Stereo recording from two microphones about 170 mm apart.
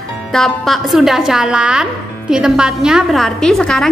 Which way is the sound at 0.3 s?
Centre (ahead or behind).